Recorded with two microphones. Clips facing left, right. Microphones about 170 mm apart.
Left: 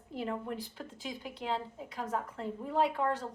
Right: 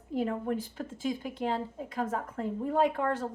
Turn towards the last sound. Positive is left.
turn(degrees=-50)  # may be behind; listen again after turning